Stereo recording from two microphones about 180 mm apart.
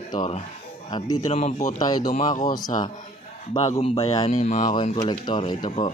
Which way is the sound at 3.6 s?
35° left (ahead or behind).